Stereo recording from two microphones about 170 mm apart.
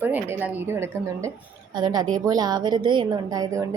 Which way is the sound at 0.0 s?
10° right (ahead or behind).